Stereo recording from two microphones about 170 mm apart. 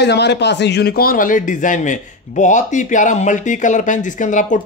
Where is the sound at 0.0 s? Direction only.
85° left.